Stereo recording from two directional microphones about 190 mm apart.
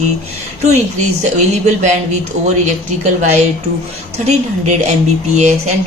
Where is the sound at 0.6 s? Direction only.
35° right (ahead or behind).